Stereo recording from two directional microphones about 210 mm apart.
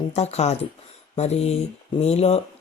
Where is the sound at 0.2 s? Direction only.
30° left (ahead or behind).